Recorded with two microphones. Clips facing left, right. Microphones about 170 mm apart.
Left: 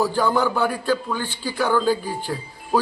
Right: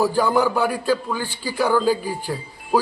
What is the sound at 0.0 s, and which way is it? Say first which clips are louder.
A man's voice: right 2 dB; 10° right (ahead or behind).